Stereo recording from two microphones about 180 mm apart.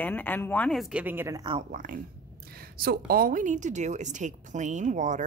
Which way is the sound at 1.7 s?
50° right (ahead or behind).